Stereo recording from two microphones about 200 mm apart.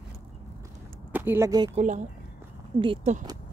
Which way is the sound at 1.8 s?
35° right (ahead or behind).